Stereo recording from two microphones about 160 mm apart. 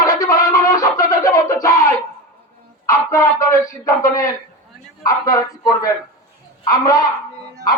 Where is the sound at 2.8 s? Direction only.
20° left (ahead or behind).